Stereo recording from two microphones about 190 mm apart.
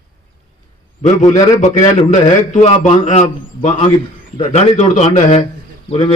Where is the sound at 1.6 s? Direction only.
35° left (ahead or behind).